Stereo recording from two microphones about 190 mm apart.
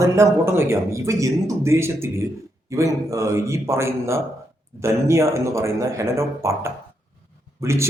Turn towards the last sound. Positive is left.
turn(degrees=-15)  # may be behind; listen again after turning